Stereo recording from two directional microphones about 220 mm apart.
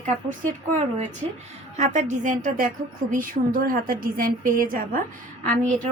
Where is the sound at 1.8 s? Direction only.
35° right (ahead or behind).